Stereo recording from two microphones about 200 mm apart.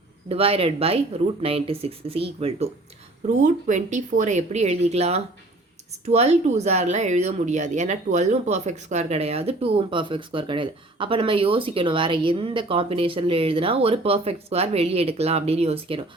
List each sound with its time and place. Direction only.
0.3 s speech: 30° right (ahead or behind)